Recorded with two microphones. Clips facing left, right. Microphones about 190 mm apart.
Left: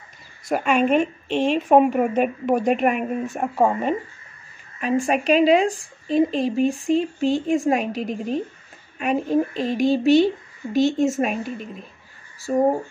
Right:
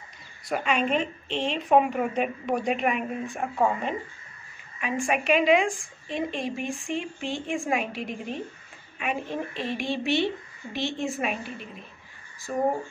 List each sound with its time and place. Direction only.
0.5 s a woman's voice: 50° left (ahead or behind)